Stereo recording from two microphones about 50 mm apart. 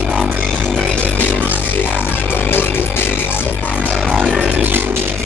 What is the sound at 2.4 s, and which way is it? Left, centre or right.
Music, left.